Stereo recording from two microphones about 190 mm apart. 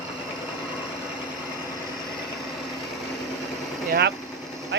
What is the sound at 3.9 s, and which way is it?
Vehicle, 60° right (ahead or behind).